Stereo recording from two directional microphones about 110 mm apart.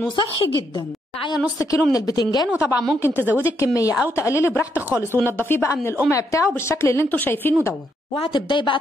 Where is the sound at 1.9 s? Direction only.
35° left (ahead or behind).